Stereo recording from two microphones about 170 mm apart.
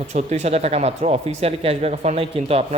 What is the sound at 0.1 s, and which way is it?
A man's voice, 40° right (ahead or behind).